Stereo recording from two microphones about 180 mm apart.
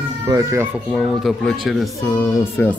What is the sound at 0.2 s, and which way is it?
Speech, 15° right (ahead or behind).